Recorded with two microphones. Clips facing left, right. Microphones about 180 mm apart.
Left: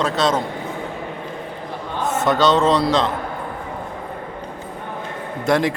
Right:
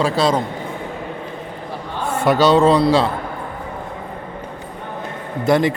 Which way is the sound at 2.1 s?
10° right (ahead or behind).